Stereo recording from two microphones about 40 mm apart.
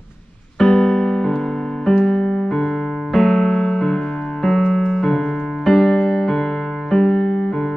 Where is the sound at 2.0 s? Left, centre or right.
Centre.